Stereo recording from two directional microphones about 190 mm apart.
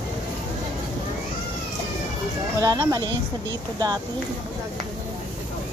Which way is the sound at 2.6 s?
20° right (ahead or behind).